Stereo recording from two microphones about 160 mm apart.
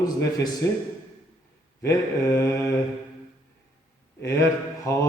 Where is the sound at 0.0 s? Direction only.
20° left (ahead or behind).